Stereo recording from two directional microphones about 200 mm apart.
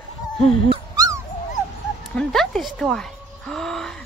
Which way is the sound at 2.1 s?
5° left (ahead or behind).